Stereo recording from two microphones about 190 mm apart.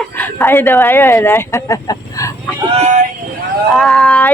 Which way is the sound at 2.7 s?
40° right (ahead or behind).